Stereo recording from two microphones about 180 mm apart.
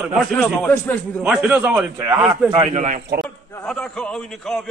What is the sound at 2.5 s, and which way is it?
Speech, 40° right (ahead or behind).